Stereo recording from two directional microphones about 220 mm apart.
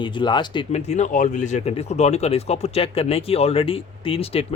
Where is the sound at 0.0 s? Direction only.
20° left (ahead or behind).